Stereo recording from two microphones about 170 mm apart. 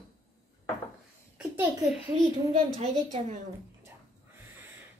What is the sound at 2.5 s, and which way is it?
Speech, 45° right (ahead or behind).